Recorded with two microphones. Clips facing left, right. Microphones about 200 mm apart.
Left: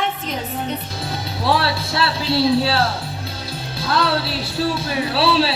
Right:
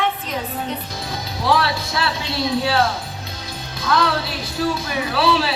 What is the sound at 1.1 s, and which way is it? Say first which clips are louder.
A man's voice: even; 30° left (ahead or behind).